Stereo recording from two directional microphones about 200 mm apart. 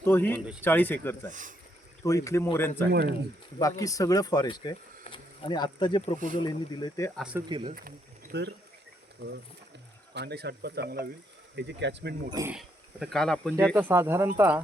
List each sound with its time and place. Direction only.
0.0 s speech: 10° left (ahead or behind)
1.3 s speech: 40° right (ahead or behind)
2.0 s speech: 15° left (ahead or behind)
6.1 s speech: 40° right (ahead or behind)
6.4 s speech: 20° left (ahead or behind)
7.2 s speech: 5° right (ahead or behind)
7.4 s speech: 25° right (ahead or behind)
7.8 s speech: 50° right (ahead or behind)
10.2 s speech: 55° right (ahead or behind)
12.3 s speech: 15° right (ahead or behind)
12.5 s speech: centre (ahead or behind)
13.7 s speech: 10° right (ahead or behind)